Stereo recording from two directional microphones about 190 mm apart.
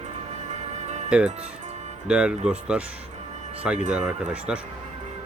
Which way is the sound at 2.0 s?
5° right (ahead or behind).